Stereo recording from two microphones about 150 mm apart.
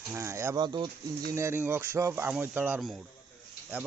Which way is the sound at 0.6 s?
30° right (ahead or behind).